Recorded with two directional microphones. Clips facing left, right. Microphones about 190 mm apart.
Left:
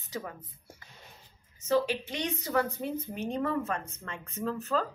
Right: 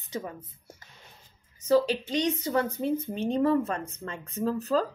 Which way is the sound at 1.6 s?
30° right (ahead or behind).